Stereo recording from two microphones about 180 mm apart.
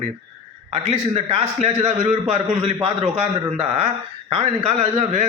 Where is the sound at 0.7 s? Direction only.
35° right (ahead or behind).